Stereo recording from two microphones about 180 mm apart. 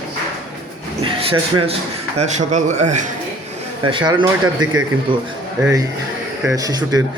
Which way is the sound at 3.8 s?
25° right (ahead or behind).